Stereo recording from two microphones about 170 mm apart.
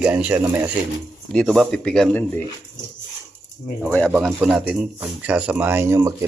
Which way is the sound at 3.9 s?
10° left (ahead or behind).